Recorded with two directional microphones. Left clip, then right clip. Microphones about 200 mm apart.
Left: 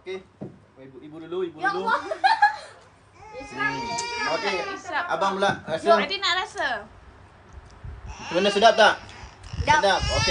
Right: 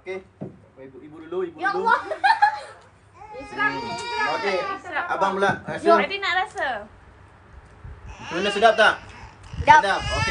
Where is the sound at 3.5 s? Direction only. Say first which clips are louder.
Right 2 dB; 20° right (ahead or behind).